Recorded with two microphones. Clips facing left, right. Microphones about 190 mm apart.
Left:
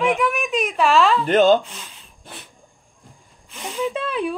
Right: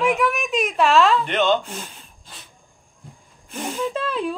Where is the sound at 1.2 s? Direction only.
40° left (ahead or behind).